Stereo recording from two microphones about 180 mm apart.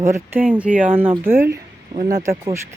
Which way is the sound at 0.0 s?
15° right (ahead or behind).